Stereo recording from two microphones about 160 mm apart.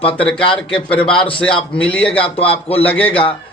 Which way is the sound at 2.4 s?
35° left (ahead or behind).